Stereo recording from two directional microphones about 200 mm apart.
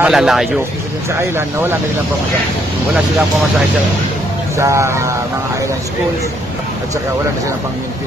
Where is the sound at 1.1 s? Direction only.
10° right (ahead or behind).